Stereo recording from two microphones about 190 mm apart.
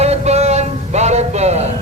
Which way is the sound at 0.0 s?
35° right (ahead or behind).